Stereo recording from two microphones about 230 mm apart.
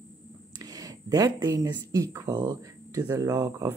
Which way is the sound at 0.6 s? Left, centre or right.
Centre.